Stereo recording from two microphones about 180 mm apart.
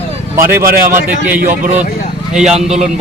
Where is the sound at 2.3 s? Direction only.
5° right (ahead or behind).